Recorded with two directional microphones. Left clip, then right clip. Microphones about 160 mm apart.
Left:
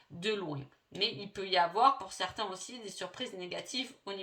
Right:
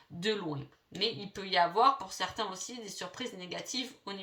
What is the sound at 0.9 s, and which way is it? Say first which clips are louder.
Speech: even; 40° left (ahead or behind).